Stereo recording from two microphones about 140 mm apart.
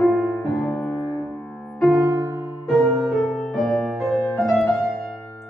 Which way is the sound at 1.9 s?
15° right (ahead or behind).